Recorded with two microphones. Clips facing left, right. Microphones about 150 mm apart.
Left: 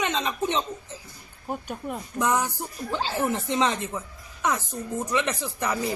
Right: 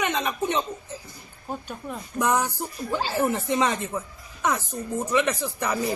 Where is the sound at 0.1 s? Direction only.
15° right (ahead or behind).